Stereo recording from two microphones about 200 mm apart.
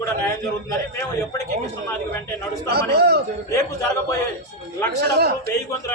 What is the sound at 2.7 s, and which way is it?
Speech, 55° right (ahead or behind).